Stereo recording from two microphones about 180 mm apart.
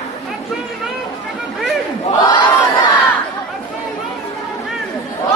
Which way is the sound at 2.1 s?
20° left (ahead or behind).